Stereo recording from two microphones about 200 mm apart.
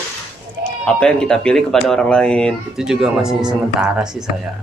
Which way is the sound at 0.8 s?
5° left (ahead or behind).